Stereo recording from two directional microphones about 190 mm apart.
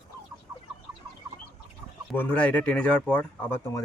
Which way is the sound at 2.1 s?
5° left (ahead or behind).